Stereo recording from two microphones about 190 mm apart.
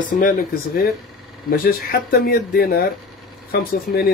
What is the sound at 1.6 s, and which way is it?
Speech, 50° left (ahead or behind).